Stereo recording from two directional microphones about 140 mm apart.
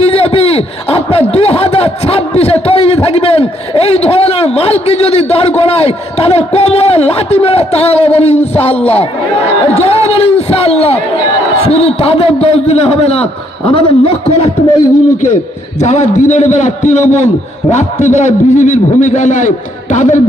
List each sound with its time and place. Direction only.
0.0 s a man's voice: 45° left (ahead or behind)
15.8 s a man's voice: 55° left (ahead or behind)